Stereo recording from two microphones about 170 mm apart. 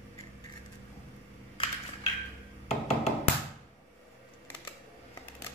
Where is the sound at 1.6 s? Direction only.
30° left (ahead or behind).